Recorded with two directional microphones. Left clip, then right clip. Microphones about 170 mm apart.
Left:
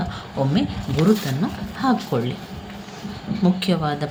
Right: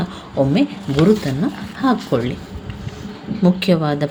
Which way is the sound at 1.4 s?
25° right (ahead or behind).